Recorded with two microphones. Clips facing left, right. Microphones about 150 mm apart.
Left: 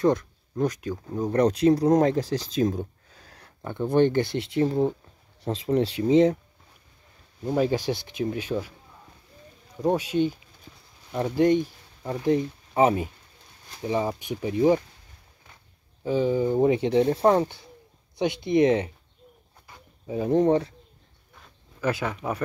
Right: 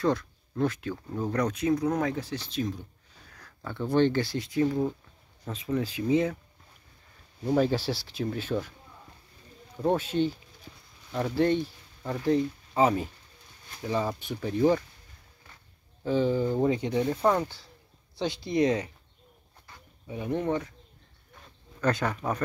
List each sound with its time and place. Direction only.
0.0 s speech: 20° left (ahead or behind)
1.7 s speech: 35° left (ahead or behind)
3.3 s speech: 25° left (ahead or behind)
7.4 s speech: 10° left (ahead or behind)
9.8 s speech: 10° left (ahead or behind)
16.0 s speech: 10° left (ahead or behind)
20.1 s speech: 35° left (ahead or behind)
21.8 s speech: 5° left (ahead or behind)